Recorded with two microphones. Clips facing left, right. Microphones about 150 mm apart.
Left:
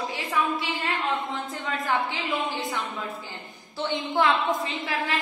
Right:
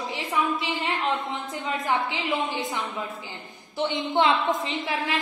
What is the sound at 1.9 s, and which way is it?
Speech, 20° right (ahead or behind).